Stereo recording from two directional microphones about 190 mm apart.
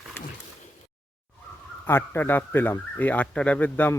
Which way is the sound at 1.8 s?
15° left (ahead or behind).